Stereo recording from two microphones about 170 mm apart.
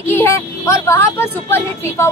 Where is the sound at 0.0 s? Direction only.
15° left (ahead or behind).